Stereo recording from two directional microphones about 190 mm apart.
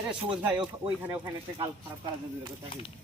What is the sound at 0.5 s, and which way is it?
A man's voice, 25° right (ahead or behind).